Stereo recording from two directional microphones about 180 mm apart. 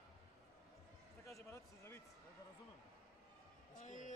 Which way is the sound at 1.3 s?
15° left (ahead or behind).